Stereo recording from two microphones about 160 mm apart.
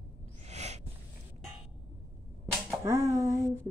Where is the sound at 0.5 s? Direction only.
45° right (ahead or behind).